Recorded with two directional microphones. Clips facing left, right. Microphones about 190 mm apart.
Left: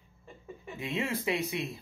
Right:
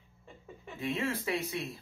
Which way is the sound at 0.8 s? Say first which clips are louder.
Even; 20° left (ahead or behind).